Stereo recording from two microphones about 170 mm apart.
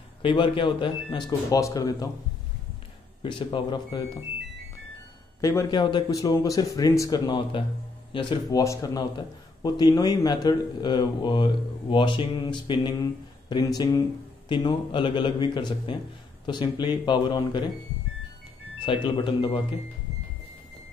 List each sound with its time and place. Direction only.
0.2 s a man's voice: 30° left (ahead or behind)
3.2 s a man's voice: 30° left (ahead or behind)
5.4 s a man's voice: 20° left (ahead or behind)
18.8 s speech: 30° left (ahead or behind)